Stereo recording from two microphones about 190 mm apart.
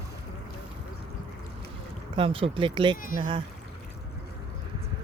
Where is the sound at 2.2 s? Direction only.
30° right (ahead or behind).